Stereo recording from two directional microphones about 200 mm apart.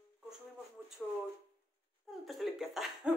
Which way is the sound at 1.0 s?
5° left (ahead or behind).